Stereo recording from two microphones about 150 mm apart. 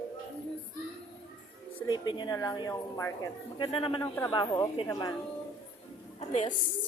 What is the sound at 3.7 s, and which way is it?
Speech, 35° left (ahead or behind).